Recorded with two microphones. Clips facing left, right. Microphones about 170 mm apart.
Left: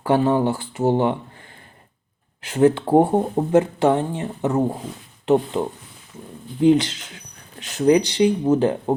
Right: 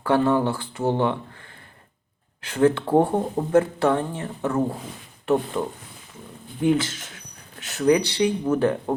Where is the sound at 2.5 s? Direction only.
15° left (ahead or behind).